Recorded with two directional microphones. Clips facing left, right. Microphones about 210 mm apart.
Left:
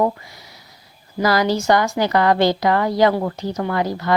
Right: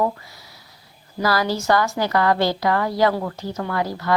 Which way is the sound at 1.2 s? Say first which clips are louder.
Left 4 dB; 20° left (ahead or behind).